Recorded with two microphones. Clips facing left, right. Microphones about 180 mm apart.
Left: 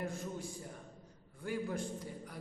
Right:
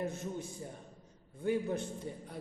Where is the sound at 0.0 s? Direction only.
20° right (ahead or behind).